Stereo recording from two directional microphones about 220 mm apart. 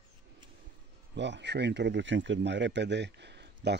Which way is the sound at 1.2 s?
50° right (ahead or behind).